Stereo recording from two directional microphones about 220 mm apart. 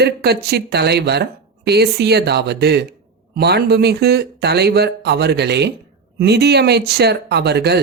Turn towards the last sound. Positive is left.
turn(degrees=-50)  # may be behind; listen again after turning